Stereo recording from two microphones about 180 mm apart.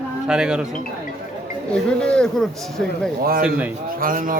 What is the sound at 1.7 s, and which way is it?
A man's voice, 5° left (ahead or behind).